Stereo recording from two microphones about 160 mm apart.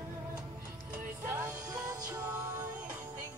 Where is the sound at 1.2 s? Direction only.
15° right (ahead or behind).